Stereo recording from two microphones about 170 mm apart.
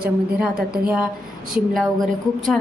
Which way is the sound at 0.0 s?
5° right (ahead or behind).